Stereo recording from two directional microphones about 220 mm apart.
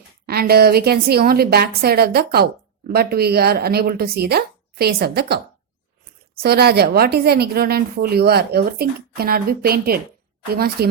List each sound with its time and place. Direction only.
0.3 s a woman's voice: 45° right (ahead or behind)